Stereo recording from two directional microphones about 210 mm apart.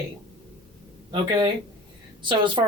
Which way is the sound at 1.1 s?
20° right (ahead or behind).